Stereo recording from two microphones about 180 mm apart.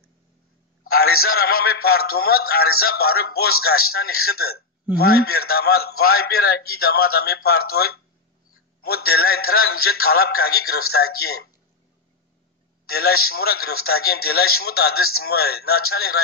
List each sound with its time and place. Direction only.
0.8 s a man's voice: 60° left (ahead or behind)
12.8 s a man's voice: 60° left (ahead or behind)